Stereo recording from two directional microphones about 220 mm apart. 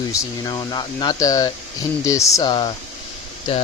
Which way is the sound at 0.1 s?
15° left (ahead or behind).